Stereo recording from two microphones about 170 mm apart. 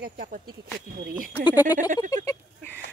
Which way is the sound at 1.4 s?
20° left (ahead or behind).